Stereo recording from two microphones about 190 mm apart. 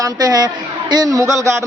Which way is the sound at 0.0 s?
20° right (ahead or behind).